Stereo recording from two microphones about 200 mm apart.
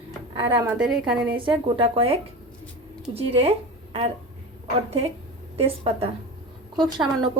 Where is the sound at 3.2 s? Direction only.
30° right (ahead or behind).